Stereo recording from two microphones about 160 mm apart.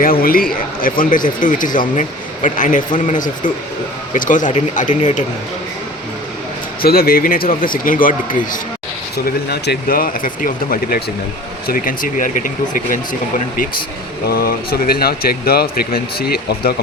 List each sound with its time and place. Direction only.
0.0 s speech: 65° left (ahead or behind)
6.8 s speech: 70° left (ahead or behind)
9.2 s speech: 75° left (ahead or behind); by 13.0 s 55° left (ahead or behind)
14.3 s speech: 70° left (ahead or behind)